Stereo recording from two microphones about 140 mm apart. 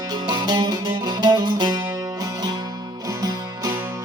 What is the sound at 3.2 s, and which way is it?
Music, 25° right (ahead or behind).